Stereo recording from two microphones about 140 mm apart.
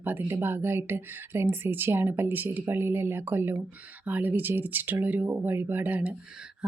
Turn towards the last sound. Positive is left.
turn(degrees=-10)  # may be behind; listen again after turning